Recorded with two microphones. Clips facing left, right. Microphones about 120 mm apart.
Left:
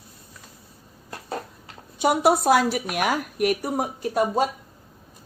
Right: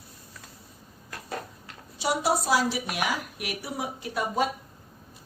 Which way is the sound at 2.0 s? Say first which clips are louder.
Left 7 dB; 55° left (ahead or behind).